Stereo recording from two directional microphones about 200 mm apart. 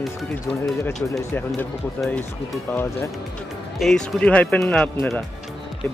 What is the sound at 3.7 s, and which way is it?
Speech, centre (ahead or behind).